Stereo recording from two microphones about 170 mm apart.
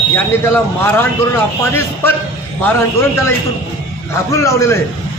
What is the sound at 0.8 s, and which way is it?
Speech, 15° left (ahead or behind).